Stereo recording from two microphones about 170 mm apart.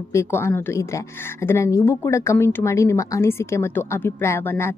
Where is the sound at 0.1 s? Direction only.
15° left (ahead or behind).